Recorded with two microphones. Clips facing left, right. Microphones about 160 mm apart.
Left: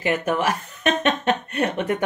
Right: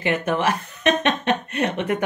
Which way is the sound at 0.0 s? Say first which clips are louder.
Even; 40° left (ahead or behind).